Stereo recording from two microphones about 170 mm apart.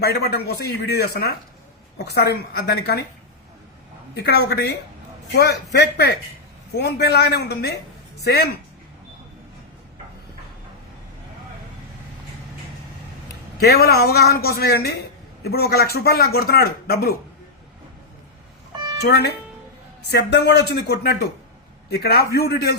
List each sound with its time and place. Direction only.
0.0 s speech: 70° left (ahead or behind)
4.1 s speech: 75° left (ahead or behind)
13.6 s speech: 70° left (ahead or behind)
19.0 s speech: 75° left (ahead or behind)